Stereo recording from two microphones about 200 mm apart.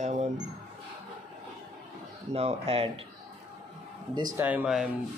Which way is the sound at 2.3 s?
30° right (ahead or behind).